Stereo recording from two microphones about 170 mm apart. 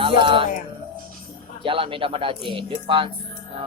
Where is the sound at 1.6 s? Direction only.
30° right (ahead or behind).